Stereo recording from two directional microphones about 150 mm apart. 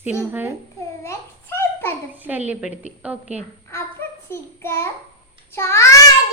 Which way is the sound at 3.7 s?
15° left (ahead or behind).